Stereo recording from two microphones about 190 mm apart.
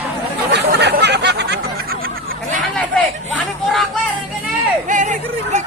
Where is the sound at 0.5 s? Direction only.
60° right (ahead or behind).